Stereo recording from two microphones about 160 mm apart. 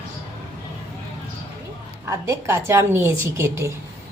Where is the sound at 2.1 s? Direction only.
15° right (ahead or behind).